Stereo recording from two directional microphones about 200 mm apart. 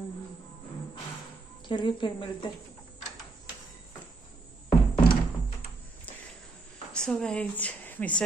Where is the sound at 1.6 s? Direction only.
25° left (ahead or behind).